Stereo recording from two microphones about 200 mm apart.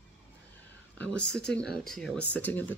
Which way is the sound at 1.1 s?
5° left (ahead or behind).